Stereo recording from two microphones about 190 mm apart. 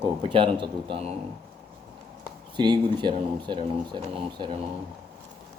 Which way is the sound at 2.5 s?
25° right (ahead or behind).